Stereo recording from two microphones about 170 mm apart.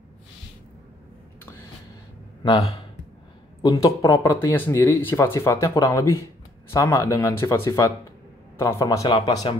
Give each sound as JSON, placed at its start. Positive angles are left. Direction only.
{"t": 2.4, "sound": "speech", "side_deg": 35}
{"t": 3.6, "sound": "speech", "side_deg": 20}